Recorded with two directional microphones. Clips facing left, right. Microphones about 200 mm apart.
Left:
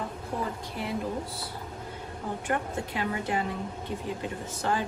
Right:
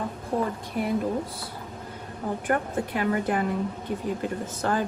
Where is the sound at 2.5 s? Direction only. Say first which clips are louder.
Right 4 dB; 55° right (ahead or behind).